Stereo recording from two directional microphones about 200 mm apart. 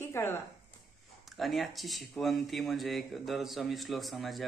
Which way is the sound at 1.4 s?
Centre (ahead or behind).